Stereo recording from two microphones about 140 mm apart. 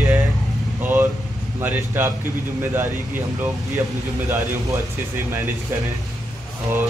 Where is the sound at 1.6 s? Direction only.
15° right (ahead or behind).